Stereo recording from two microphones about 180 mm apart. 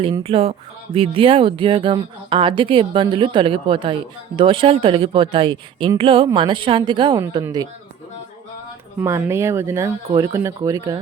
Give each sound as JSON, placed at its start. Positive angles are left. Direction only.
{"t": 0.0, "sound": "speech", "side_deg": -30}
{"t": 9.0, "sound": "speech", "side_deg": -15}